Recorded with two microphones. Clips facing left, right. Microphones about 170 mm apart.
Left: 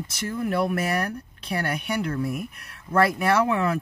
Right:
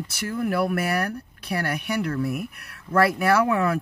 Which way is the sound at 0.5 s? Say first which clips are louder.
Even; 25° left (ahead or behind).